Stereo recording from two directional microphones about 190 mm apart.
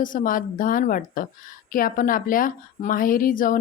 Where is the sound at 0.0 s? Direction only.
45° left (ahead or behind).